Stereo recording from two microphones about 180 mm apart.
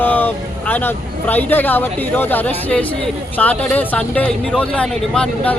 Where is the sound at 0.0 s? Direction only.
10° left (ahead or behind).